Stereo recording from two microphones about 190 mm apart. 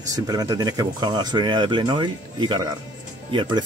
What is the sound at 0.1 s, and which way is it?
Speech, 20° right (ahead or behind).